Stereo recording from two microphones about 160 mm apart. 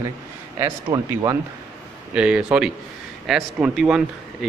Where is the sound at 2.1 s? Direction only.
5° right (ahead or behind).